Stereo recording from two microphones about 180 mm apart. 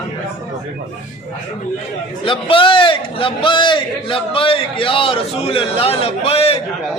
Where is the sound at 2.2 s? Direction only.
30° left (ahead or behind).